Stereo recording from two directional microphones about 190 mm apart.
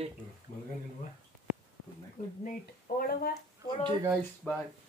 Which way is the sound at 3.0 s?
50° left (ahead or behind).